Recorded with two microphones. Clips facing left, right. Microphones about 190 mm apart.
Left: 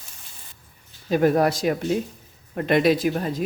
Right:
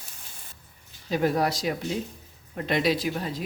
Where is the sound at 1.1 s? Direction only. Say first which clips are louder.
Left 6 dB; 50° left (ahead or behind).